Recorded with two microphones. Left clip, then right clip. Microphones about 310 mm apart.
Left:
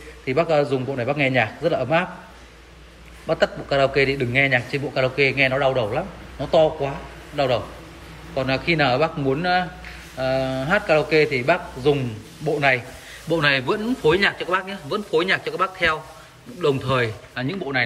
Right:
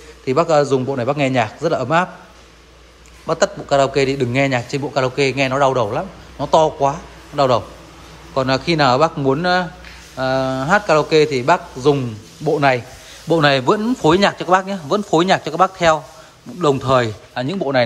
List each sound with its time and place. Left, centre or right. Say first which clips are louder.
0.2 s a man's voice: right 5 dB; centre
3.3 s a man's voice: right 4 dB; centre